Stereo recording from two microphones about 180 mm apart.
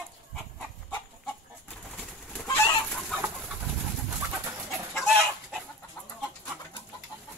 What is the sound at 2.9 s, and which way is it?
Chicken, centre (ahead or behind).